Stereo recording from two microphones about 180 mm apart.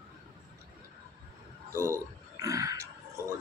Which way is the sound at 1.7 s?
15° right (ahead or behind).